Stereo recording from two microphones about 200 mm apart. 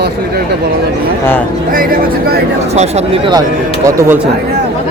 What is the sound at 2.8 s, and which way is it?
Speech, 35° right (ahead or behind).